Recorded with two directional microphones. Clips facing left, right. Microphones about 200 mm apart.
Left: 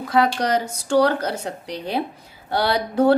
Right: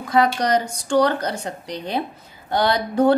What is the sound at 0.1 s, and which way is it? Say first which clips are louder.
A woman's voice: right 1 dB; 5° left (ahead or behind).